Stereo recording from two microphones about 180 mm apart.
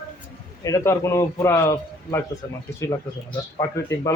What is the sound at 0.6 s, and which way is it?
A man's voice, 15° left (ahead or behind).